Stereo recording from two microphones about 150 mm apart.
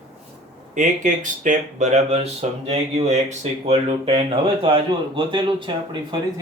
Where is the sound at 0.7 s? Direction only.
60° right (ahead or behind); by 6.0 s 35° right (ahead or behind).